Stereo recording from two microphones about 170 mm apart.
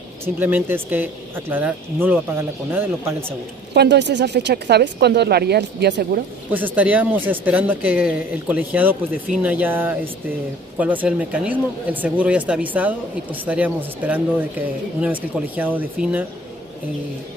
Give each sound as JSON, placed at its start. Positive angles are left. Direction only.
{"t": 0.2, "sound": "speech", "side_deg": -10}
{"t": 3.7, "sound": "speech", "side_deg": -85}
{"t": 6.5, "sound": "speech", "side_deg": -10}